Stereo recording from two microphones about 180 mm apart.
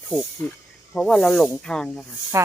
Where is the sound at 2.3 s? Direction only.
15° right (ahead or behind).